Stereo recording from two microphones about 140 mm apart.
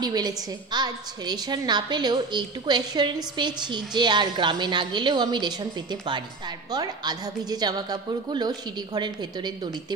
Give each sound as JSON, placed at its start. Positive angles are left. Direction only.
{"t": 0.0, "sound": "a woman's voice", "side_deg": -30}